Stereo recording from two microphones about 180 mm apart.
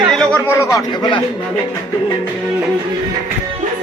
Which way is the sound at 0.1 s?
5° left (ahead or behind).